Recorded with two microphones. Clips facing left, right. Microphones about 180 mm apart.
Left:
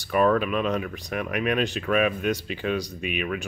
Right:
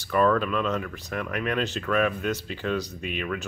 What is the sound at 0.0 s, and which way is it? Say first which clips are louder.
Speech: left 1 dB; 15° left (ahead or behind).